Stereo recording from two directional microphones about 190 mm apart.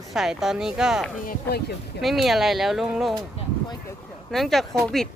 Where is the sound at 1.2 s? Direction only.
55° left (ahead or behind).